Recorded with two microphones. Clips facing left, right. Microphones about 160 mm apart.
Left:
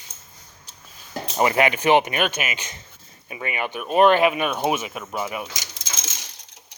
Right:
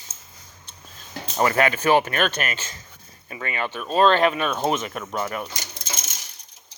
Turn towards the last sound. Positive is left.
turn(degrees=90)